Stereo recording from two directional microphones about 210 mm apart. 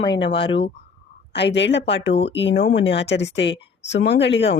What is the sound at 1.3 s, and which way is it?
Speech, 55° left (ahead or behind).